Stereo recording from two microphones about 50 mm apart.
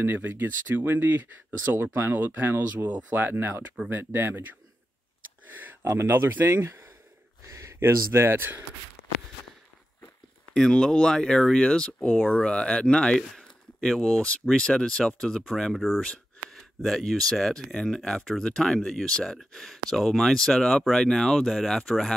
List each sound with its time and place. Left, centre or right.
0.0 s speech: right
5.8 s speech: right
7.4 s a sound: right
7.9 s speech: right
10.5 s speech: centre
13.8 s speech: centre
14.5 s speech: centre
15.5 s speech: centre
16.4 s speech: centre